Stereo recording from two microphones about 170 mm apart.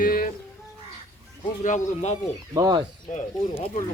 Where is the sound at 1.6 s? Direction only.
45° left (ahead or behind).